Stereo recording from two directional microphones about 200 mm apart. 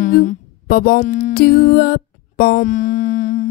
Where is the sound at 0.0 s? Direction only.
40° left (ahead or behind).